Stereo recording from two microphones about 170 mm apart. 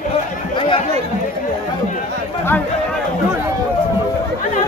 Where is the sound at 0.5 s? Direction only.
30° left (ahead or behind).